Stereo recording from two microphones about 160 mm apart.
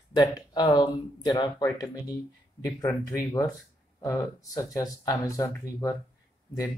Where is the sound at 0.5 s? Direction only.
25° left (ahead or behind).